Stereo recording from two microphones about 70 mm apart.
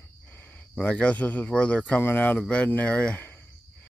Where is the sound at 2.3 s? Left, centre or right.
Centre.